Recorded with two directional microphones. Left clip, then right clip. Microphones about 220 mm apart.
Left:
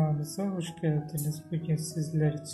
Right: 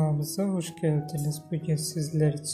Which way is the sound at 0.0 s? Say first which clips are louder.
Right 3 dB; 25° right (ahead or behind).